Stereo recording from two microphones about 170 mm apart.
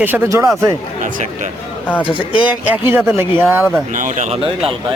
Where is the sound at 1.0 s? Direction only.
50° right (ahead or behind).